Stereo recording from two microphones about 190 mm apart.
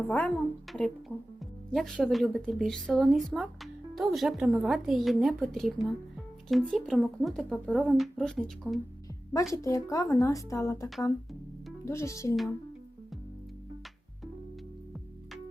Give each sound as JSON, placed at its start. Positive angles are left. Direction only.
{"t": 0.1, "sound": "speech", "side_deg": 5}
{"t": 9.5, "sound": "speech", "side_deg": 15}
{"t": 11.9, "sound": "speech", "side_deg": 15}